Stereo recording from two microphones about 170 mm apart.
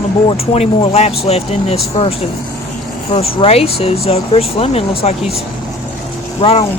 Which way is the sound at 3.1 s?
35° left (ahead or behind).